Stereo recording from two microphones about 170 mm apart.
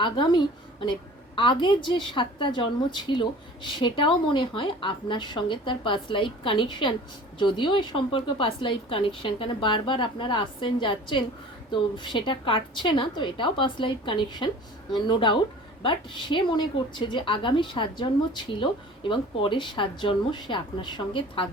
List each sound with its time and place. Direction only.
0.0 s a woman's voice: 30° left (ahead or behind)